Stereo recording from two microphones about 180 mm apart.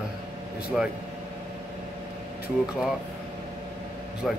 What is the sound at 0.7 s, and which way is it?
Speech, centre (ahead or behind).